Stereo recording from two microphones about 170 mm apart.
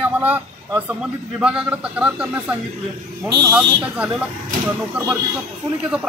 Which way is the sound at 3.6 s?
5° right (ahead or behind).